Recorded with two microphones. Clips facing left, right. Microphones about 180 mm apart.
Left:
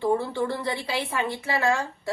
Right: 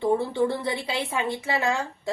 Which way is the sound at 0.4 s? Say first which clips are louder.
Right 2 dB; 20° right (ahead or behind).